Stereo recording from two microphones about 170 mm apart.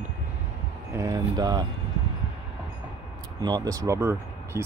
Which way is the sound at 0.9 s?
20° right (ahead or behind).